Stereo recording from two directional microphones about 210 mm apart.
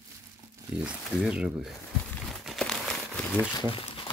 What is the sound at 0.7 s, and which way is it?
Speech, 5° right (ahead or behind).